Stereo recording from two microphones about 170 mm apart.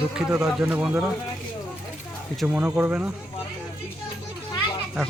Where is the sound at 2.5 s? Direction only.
10° right (ahead or behind).